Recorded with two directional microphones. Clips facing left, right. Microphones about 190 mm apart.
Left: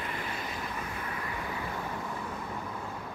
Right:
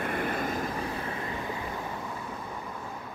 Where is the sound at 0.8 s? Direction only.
30° right (ahead or behind).